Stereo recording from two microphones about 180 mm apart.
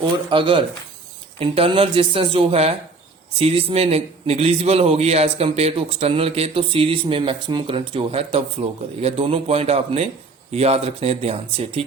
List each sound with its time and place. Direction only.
0.0 s a man's voice: 25° right (ahead or behind)